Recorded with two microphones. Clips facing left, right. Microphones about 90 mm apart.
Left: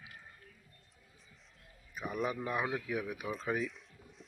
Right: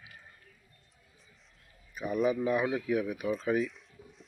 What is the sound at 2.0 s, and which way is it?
Speech, centre (ahead or behind).